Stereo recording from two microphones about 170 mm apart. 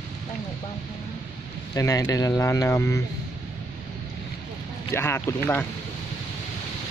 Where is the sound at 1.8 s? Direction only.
20° left (ahead or behind).